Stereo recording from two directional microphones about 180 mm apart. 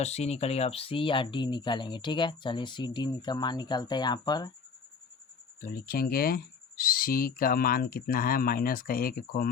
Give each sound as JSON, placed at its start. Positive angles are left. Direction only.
{"t": 0.0, "sound": "speech", "side_deg": 35}
{"t": 5.6, "sound": "speech", "side_deg": 50}